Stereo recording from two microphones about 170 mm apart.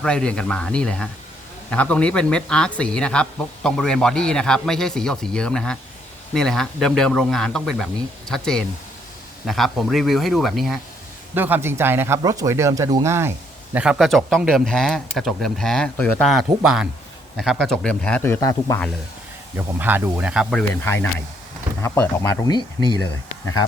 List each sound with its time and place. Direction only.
0.0 s speech: 5° left (ahead or behind)
11.3 s speech: 10° right (ahead or behind)
13.7 s speech: centre (ahead or behind); by 18.8 s 20° left (ahead or behind)
19.5 s speech: 10° right (ahead or behind)
20.6 s speech: 10° left (ahead or behind)